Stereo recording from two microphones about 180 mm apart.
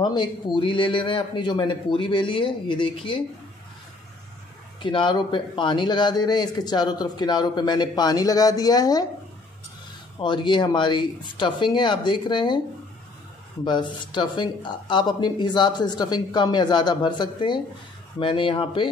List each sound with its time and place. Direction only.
0.0 s a man's voice: 25° left (ahead or behind)
4.8 s a man's voice: 25° left (ahead or behind)
10.1 s a man's voice: 25° left (ahead or behind)
13.7 s a man's voice: 25° left (ahead or behind)